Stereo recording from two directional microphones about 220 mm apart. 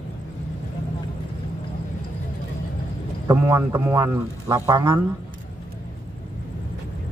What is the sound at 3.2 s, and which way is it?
A man's voice, 15° right (ahead or behind).